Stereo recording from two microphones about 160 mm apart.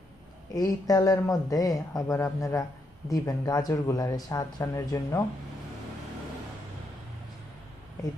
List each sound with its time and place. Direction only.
0.5 s speech: 25° left (ahead or behind)